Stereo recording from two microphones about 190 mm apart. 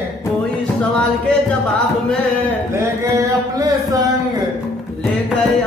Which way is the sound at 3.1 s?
15° right (ahead or behind).